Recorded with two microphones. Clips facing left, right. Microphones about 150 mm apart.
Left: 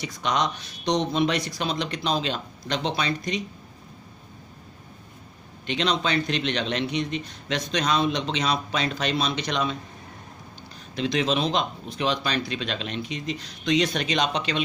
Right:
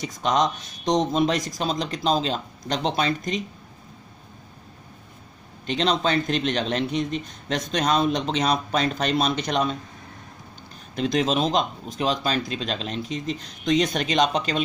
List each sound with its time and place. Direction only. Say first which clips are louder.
0.0 s a man's voice: right 3 dB; 45° right (ahead or behind)
5.7 s a man's voice: right 2 dB; 40° right (ahead or behind)
11.0 s a man's voice: right 2 dB; 45° right (ahead or behind)